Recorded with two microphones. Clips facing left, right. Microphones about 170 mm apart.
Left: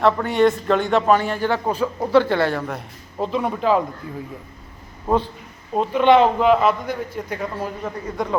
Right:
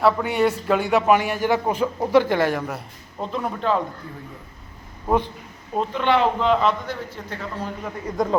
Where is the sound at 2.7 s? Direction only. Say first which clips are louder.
Left 4 dB; 5° left (ahead or behind).